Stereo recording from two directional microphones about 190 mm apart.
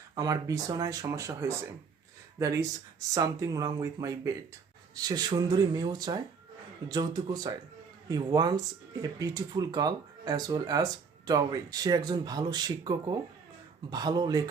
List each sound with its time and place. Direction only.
0.2 s speech: 20° right (ahead or behind)